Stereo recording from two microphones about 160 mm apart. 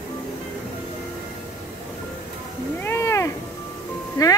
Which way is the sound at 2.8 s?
15° left (ahead or behind).